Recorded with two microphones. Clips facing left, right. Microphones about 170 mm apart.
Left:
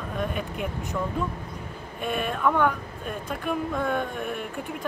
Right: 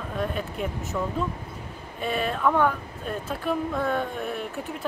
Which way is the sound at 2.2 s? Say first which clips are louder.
Right 1 dB; centre (ahead or behind).